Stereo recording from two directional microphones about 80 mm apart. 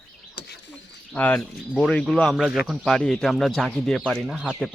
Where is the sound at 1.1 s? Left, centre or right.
Left.